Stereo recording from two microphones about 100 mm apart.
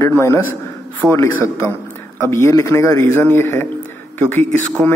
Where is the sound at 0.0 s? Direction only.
30° left (ahead or behind).